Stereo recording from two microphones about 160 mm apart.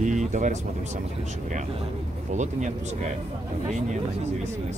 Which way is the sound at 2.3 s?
50° right (ahead or behind).